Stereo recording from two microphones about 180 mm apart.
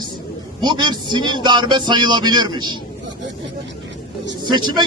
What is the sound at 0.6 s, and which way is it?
Speech, 25° right (ahead or behind).